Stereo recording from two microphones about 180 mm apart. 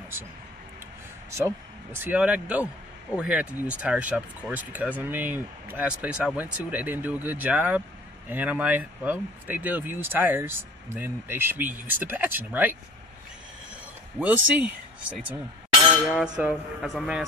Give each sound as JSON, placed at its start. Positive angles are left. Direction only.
{"t": 2.0, "sound": "speech", "side_deg": -10}
{"t": 14.2, "sound": "speech", "side_deg": -5}
{"t": 16.1, "sound": "a sound", "side_deg": -5}